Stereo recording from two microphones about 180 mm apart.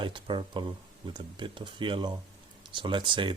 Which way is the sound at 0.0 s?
25° right (ahead or behind).